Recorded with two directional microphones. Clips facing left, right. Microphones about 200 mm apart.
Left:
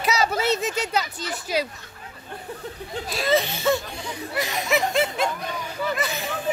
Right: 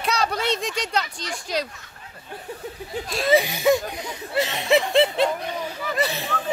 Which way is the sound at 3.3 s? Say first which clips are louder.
Right 3 dB; 15° right (ahead or behind).